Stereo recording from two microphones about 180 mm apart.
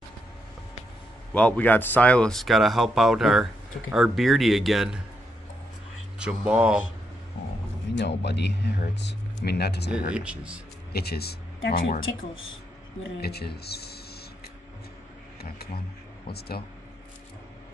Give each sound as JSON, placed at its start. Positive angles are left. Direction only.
{"t": 1.3, "sound": "speech", "side_deg": 10}
{"t": 6.1, "sound": "speech", "side_deg": -5}
{"t": 7.9, "sound": "speech", "side_deg": 70}
{"t": 9.9, "sound": "speech", "side_deg": -5}
{"t": 10.9, "sound": "speech", "side_deg": 60}
{"t": 13.2, "sound": "speech", "side_deg": 60}
{"t": 16.3, "sound": "speech", "side_deg": 60}